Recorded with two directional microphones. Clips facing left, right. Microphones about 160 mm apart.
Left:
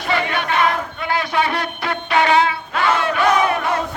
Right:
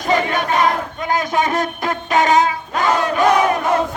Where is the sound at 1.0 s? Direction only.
45° right (ahead or behind).